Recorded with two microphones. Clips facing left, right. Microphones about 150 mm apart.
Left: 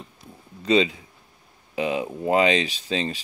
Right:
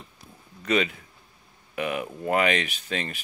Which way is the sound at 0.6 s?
25° left (ahead or behind).